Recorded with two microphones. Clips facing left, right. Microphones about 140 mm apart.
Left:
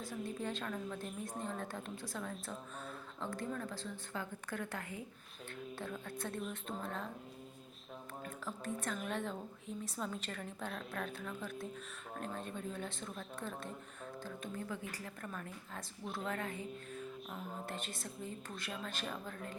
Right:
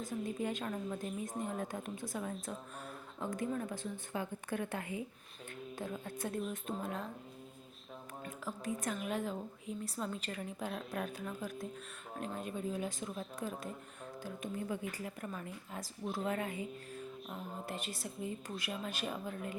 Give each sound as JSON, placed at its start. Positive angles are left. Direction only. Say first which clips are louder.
{"t": 0.3, "sound": "a woman's voice", "louder": "right 2 dB", "side_deg": -10}
{"t": 1.0, "sound": "music", "louder": "right 3 dB", "side_deg": 0}
{"t": 1.4, "sound": "a woman's voice", "louder": "right 2 dB", "side_deg": -10}
{"t": 8.2, "sound": "a woman's voice", "louder": "right 3 dB", "side_deg": -5}
{"t": 10.0, "sound": "music", "louder": "right 1 dB", "side_deg": -5}
{"t": 12.1, "sound": "a woman's voice", "louder": "right 3 dB", "side_deg": -10}
{"t": 16.0, "sound": "music", "louder": "right 4 dB", "side_deg": 0}
{"t": 16.3, "sound": "a woman's voice", "louder": "right 3 dB", "side_deg": -15}
{"t": 16.6, "sound": "music", "louder": "even", "side_deg": 0}